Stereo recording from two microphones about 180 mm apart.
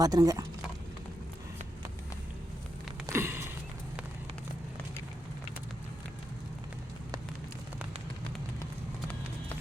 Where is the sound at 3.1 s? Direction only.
15° right (ahead or behind).